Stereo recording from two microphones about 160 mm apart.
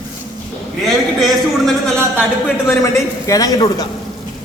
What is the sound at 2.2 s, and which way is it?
A man's voice, 15° left (ahead or behind).